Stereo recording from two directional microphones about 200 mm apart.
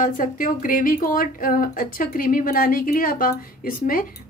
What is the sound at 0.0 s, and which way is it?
Speech, 40° left (ahead or behind).